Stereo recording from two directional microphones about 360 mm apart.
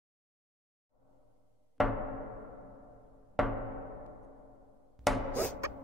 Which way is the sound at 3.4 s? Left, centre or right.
Centre.